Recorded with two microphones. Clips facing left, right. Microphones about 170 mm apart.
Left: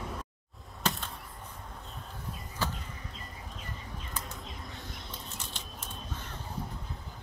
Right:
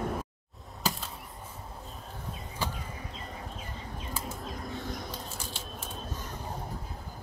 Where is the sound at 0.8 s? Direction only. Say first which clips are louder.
Even; centre (ahead or behind).